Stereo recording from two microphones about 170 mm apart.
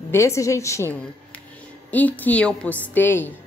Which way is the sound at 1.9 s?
10° left (ahead or behind).